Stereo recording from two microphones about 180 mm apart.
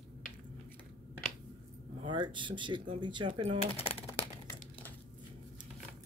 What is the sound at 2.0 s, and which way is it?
Speech, 25° right (ahead or behind).